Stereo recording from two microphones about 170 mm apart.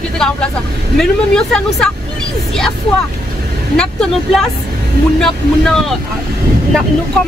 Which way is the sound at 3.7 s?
5° left (ahead or behind).